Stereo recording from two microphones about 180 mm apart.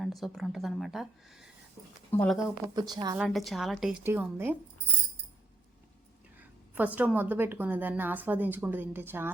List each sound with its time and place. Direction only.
0.0 s a woman's voice: centre (ahead or behind)
2.7 s speech: 20° right (ahead or behind)
3.2 s a woman's voice: centre (ahead or behind)
4.0 s a woman's voice: 10° right (ahead or behind)
6.7 s a woman's voice: 10° right (ahead or behind)